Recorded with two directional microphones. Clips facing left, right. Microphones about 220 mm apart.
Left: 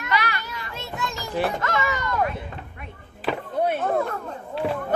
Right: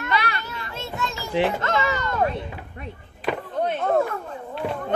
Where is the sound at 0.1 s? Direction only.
30° right (ahead or behind).